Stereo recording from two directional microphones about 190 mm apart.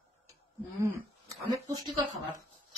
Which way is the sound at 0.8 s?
15° right (ahead or behind).